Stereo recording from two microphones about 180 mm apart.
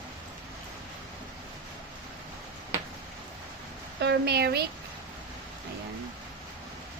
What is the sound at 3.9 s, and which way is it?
Speech, 65° right (ahead or behind).